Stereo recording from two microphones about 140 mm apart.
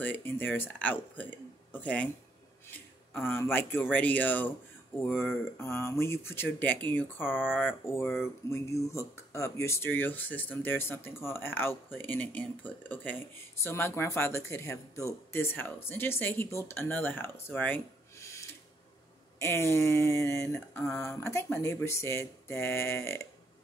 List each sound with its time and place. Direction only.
0.0 s speech: 15° left (ahead or behind)
3.1 s speech: 15° left (ahead or behind)